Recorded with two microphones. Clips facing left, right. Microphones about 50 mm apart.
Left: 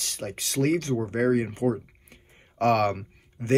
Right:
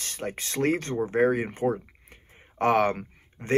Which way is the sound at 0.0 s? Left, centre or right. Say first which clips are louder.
Right 1 dB; right.